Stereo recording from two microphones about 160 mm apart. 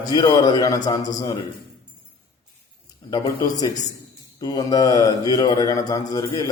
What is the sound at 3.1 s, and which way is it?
A man's voice, 25° left (ahead or behind).